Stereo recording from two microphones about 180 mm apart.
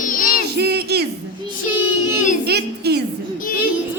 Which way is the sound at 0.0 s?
50° left (ahead or behind).